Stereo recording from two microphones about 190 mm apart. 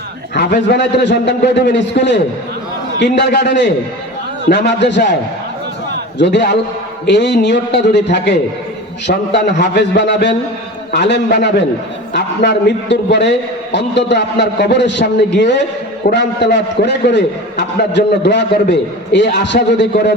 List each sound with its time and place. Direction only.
0.3 s a man's voice: 60° left (ahead or behind)
6.1 s a man's voice: 65° left (ahead or behind)